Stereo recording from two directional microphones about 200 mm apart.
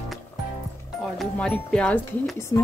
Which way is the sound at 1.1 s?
5° left (ahead or behind).